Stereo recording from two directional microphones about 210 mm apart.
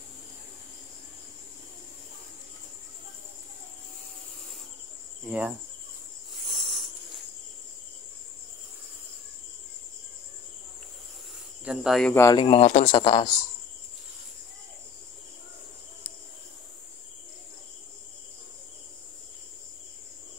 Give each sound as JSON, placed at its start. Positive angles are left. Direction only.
{"t": 5.2, "sound": "cricket", "side_deg": -5}
{"t": 6.4, "sound": "a sound", "side_deg": 0}
{"t": 11.6, "sound": "speech", "side_deg": -5}
{"t": 12.2, "sound": "speech", "side_deg": 20}